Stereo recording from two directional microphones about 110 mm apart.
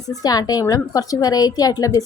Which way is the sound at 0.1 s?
35° left (ahead or behind).